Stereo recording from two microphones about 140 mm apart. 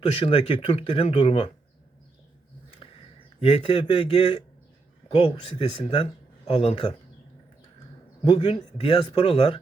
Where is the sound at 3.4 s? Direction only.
40° left (ahead or behind).